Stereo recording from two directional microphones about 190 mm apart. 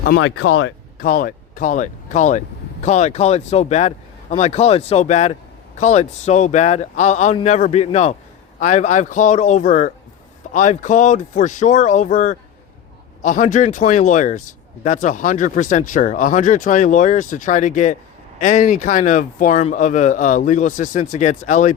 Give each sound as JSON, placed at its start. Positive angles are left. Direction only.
{"t": 0.0, "sound": "speech", "side_deg": 75}
{"t": 0.9, "sound": "speech", "side_deg": 45}